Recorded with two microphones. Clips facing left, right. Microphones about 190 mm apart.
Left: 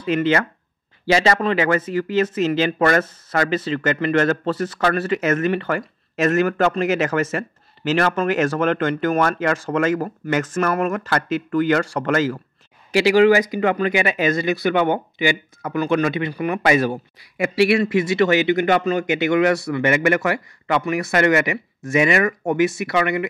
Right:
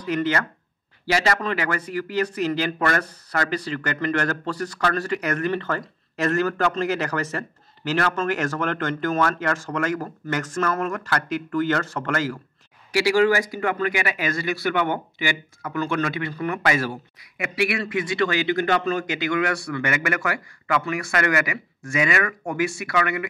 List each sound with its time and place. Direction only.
0.0 s speech: 25° left (ahead or behind)